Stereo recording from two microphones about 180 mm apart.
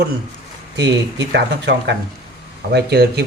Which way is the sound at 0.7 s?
75° right (ahead or behind).